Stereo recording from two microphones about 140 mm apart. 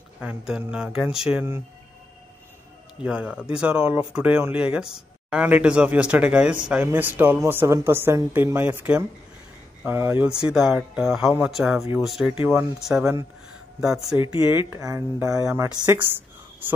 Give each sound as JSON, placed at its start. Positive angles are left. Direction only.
{"t": 0.2, "sound": "speech", "side_deg": -10}
{"t": 3.0, "sound": "speech", "side_deg": -5}
{"t": 13.0, "sound": "speech", "side_deg": -20}
{"t": 13.7, "sound": "speech", "side_deg": -5}
{"t": 14.2, "sound": "speech", "side_deg": 40}
{"t": 14.5, "sound": "speech", "side_deg": -15}